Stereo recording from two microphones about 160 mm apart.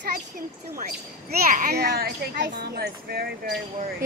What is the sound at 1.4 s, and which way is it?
A child's voice, 55° right (ahead or behind).